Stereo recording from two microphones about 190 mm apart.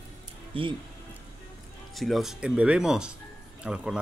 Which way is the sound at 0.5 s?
30° right (ahead or behind).